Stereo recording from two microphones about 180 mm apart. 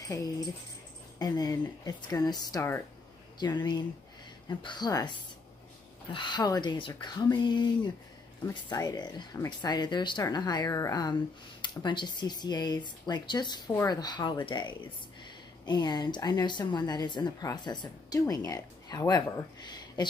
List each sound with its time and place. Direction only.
0.0 s a woman's voice: 20° left (ahead or behind)